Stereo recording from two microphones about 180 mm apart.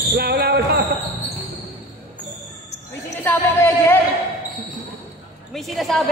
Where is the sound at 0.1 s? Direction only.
60° right (ahead or behind).